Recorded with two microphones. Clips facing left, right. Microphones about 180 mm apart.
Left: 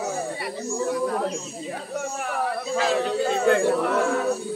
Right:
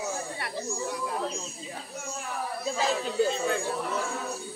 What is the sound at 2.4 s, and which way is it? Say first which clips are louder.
Speech: left 4 dB; 65° left (ahead or behind).